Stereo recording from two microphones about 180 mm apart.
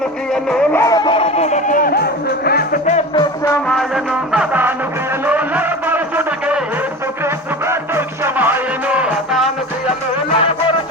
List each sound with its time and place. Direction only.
0.5 s music: 5° left (ahead or behind); by 3.0 s 50° left (ahead or behind)
3.2 s music: 20° left (ahead or behind)
3.7 s music: centre (ahead or behind)
7.7 s music: 15° right (ahead or behind)